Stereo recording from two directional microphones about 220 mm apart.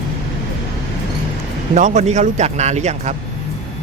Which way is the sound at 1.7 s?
35° right (ahead or behind).